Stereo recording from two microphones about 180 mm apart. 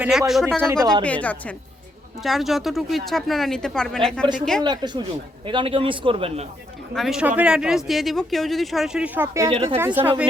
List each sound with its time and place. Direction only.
0.0 s speech: 5° right (ahead or behind)
0.6 s speech: 15° right (ahead or behind)
1.0 s a woman's voice: 10° left (ahead or behind)
4.6 s a man's voice: 25° right (ahead or behind)
6.9 s speech: centre (ahead or behind)
9.5 s speech: 30° right (ahead or behind)
9.7 s speech: 10° right (ahead or behind)